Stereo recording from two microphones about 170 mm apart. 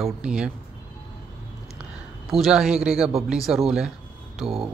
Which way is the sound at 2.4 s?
5° right (ahead or behind).